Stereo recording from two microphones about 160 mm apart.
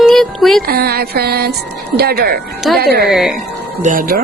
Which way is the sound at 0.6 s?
75° right (ahead or behind).